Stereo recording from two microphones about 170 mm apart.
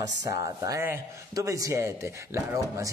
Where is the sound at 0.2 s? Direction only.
20° right (ahead or behind).